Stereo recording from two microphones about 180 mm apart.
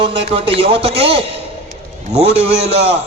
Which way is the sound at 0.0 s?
30° right (ahead or behind).